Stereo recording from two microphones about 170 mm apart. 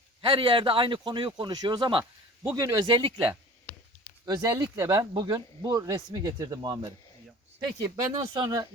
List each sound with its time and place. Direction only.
0.2 s speech: 25° right (ahead or behind)
4.3 s speech: 20° right (ahead or behind)